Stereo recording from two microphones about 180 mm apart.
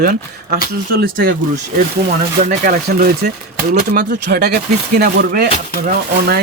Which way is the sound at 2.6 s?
55° right (ahead or behind).